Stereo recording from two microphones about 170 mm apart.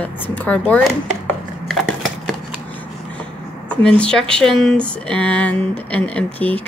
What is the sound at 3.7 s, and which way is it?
Speech, 5° left (ahead or behind).